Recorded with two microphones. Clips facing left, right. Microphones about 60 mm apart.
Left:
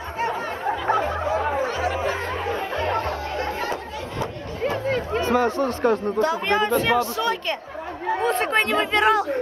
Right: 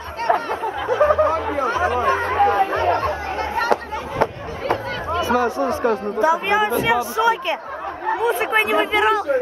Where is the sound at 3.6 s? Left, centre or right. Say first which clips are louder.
Right 7 dB; right.